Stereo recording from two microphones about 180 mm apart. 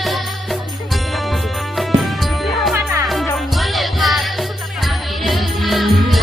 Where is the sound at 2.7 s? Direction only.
15° right (ahead or behind).